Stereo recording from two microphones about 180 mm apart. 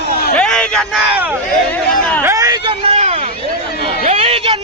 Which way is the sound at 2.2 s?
20° right (ahead or behind).